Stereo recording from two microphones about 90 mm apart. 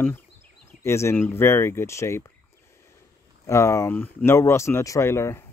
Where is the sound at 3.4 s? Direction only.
30° left (ahead or behind).